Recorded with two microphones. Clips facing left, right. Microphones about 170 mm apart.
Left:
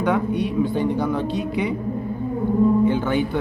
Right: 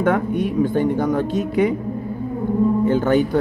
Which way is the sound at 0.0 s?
50° right (ahead or behind).